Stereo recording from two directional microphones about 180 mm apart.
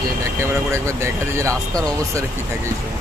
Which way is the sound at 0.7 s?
15° right (ahead or behind).